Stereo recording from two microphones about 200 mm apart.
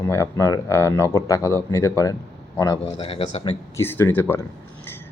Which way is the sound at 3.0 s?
30° left (ahead or behind).